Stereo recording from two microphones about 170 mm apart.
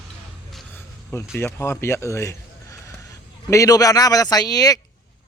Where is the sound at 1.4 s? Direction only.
15° left (ahead or behind).